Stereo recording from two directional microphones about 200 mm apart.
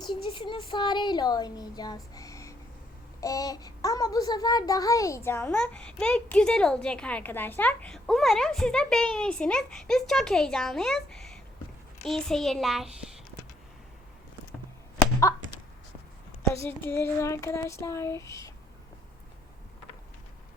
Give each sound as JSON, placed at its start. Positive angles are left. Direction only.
{"t": 0.0, "sound": "a child's voice", "side_deg": 25}
{"t": 16.4, "sound": "child singing", "side_deg": 10}